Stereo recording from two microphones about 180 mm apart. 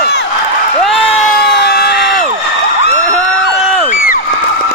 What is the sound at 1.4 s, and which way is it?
Crowd, 70° left (ahead or behind).